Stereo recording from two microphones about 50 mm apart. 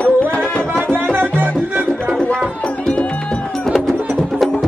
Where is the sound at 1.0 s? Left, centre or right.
Right.